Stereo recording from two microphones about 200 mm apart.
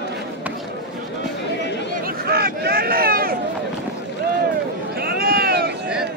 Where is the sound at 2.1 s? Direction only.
50° right (ahead or behind).